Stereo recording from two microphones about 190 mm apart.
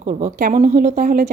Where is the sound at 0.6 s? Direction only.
40° right (ahead or behind).